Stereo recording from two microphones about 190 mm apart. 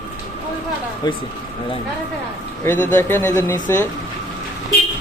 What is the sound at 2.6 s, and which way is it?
A man's voice, 10° left (ahead or behind).